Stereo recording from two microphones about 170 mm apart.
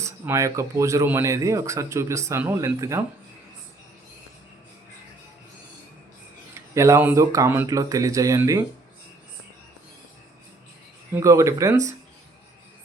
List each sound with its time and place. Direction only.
0.0 s speech: 15° right (ahead or behind)
6.7 s speech: 15° right (ahead or behind)
11.1 s speech: 20° right (ahead or behind)